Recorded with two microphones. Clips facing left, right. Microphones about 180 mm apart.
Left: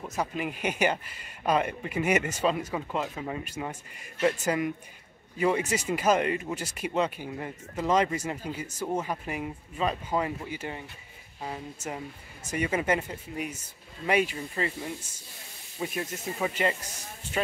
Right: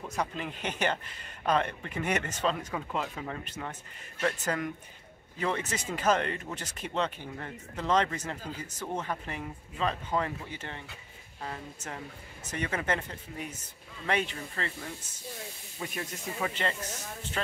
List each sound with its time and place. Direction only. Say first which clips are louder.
0.1 s speech: left 3 dB; 5° left (ahead or behind)